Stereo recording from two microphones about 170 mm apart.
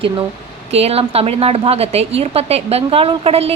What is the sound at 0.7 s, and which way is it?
A woman's voice, 35° right (ahead or behind).